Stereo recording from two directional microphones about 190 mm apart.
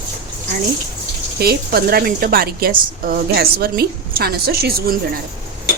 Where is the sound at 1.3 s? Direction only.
55° right (ahead or behind).